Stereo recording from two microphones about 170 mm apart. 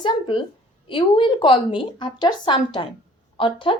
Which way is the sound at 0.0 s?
30° left (ahead or behind).